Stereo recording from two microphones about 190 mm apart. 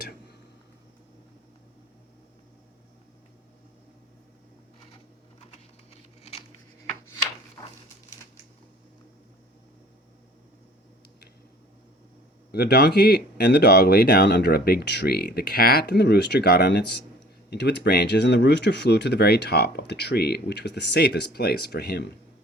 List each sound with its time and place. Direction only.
12.5 s speech: 55° left (ahead or behind)